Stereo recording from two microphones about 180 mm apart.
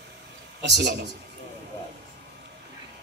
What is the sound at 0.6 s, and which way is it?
Speech, 70° right (ahead or behind).